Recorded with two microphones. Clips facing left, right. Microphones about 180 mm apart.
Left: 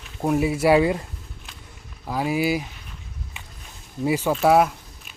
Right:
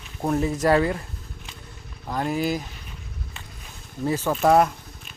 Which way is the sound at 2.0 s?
5° left (ahead or behind).